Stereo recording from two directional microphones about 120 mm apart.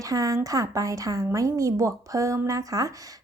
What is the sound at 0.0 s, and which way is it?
Speech, 30° right (ahead or behind).